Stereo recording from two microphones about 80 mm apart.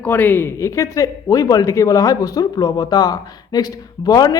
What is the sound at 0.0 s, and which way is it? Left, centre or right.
Speech, left.